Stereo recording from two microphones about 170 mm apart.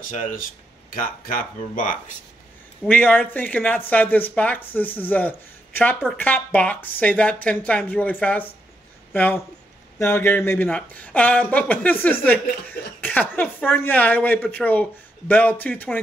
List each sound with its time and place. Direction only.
0.1 s speech: 50° left (ahead or behind)
2.8 s speech: 10° left (ahead or behind)